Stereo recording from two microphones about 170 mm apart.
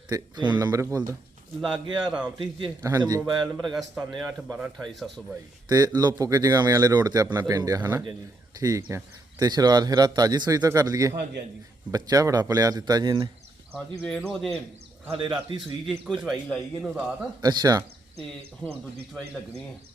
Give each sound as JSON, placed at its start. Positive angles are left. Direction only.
{"t": 0.1, "sound": "speech", "side_deg": -25}
{"t": 1.6, "sound": "a man's voice", "side_deg": -5}
{"t": 2.4, "sound": "speech", "side_deg": -25}
{"t": 3.6, "sound": "a man's voice", "side_deg": 0}
{"t": 5.6, "sound": "speech", "side_deg": -25}
{"t": 14.0, "sound": "a man's voice", "side_deg": 5}
{"t": 15.1, "sound": "speech", "side_deg": -30}
{"t": 16.2, "sound": "a man's voice", "side_deg": 0}
{"t": 17.4, "sound": "speech", "side_deg": -25}
{"t": 19.1, "sound": "a man's voice", "side_deg": 0}